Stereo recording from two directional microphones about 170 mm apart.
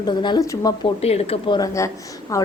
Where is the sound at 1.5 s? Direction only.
15° left (ahead or behind).